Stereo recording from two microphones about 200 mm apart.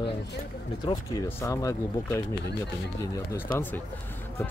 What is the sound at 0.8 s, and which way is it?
Speech, 20° left (ahead or behind).